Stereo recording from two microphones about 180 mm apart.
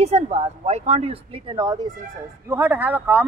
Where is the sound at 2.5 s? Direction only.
10° right (ahead or behind).